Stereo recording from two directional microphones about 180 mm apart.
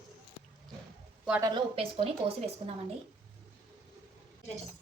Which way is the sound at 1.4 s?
30° right (ahead or behind).